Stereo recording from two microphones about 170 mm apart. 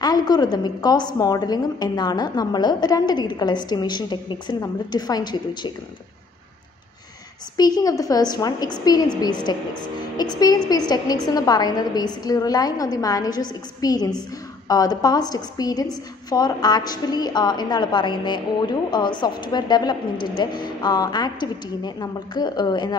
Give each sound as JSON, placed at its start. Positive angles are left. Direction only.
{"t": 0.0, "sound": "a woman's voice", "side_deg": 25}
{"t": 7.5, "sound": "a woman's voice", "side_deg": 20}